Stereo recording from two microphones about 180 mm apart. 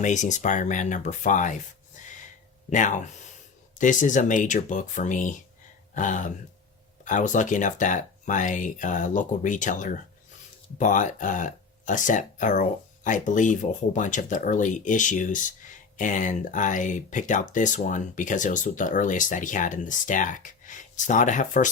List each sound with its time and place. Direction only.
0.0 s speech: 45° left (ahead or behind)
2.6 s speech: 45° left (ahead or behind)